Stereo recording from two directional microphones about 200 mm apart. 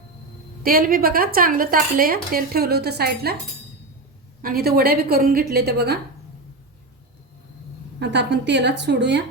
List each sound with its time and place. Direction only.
0.6 s speech: 45° right (ahead or behind)
4.4 s speech: 50° right (ahead or behind)
7.9 s a woman's voice: 60° right (ahead or behind)